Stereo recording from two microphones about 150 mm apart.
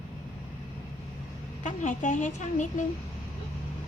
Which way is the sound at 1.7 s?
55° left (ahead or behind).